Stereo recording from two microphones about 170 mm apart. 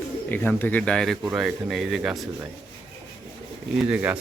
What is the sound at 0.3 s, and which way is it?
Speech, 10° left (ahead or behind).